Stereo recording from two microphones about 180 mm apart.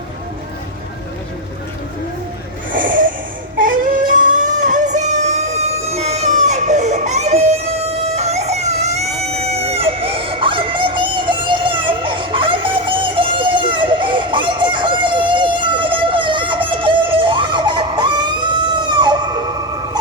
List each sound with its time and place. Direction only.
2.7 s wheeze: 50° right (ahead or behind)
3.6 s music: 50° right (ahead or behind)
8.1 s a sound: 35° right (ahead or behind)